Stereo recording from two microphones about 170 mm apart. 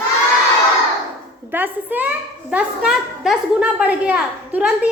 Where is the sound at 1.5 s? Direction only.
10° right (ahead or behind).